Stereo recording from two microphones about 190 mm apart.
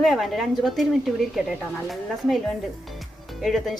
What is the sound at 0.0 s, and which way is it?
Speech, centre (ahead or behind).